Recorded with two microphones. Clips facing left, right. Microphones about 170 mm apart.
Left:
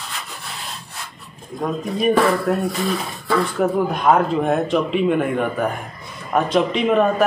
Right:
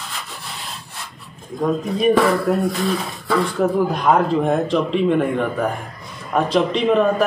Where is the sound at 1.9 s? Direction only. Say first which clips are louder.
Even; centre (ahead or behind).